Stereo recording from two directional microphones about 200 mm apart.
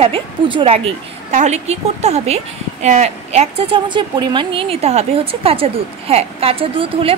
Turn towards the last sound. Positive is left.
turn(degrees=-25)  # may be behind; listen again after turning